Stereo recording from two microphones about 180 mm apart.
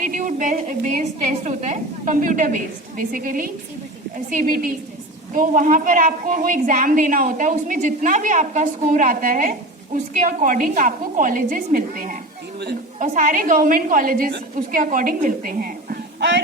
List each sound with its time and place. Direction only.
0.0 s a woman's voice: 45° right (ahead or behind)